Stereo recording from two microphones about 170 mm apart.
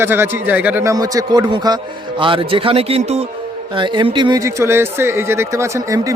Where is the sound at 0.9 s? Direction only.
20° right (ahead or behind).